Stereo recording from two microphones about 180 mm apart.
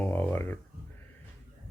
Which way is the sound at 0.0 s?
10° left (ahead or behind).